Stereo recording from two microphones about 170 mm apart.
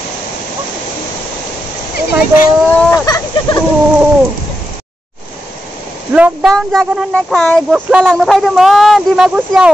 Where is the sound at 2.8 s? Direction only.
15° left (ahead or behind).